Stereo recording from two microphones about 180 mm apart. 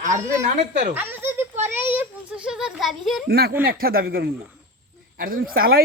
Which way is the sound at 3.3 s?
60° right (ahead or behind).